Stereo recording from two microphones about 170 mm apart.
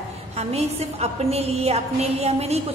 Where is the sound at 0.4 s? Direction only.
40° right (ahead or behind).